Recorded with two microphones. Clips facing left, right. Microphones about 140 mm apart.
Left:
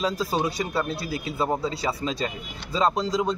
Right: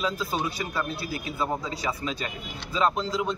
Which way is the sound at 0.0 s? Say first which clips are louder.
Left 3 dB; 35° left (ahead or behind).